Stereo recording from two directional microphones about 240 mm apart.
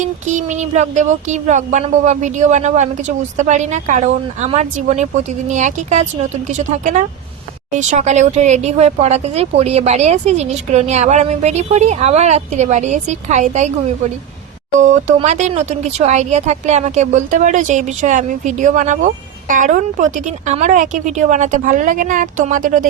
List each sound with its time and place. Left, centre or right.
0.0 s speech: right
14.8 s speech: right